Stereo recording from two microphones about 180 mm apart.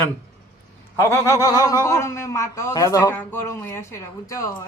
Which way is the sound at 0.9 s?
15° left (ahead or behind).